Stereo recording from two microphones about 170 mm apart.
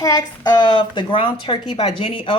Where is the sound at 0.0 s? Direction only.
20° left (ahead or behind).